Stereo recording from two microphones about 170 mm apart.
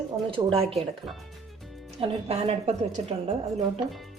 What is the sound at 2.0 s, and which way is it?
A woman's voice, 35° right (ahead or behind).